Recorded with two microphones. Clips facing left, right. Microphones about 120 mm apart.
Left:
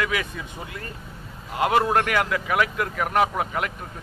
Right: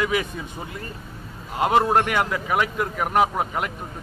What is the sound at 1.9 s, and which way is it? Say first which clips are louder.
Speech: right 1 dB; 25° right (ahead or behind).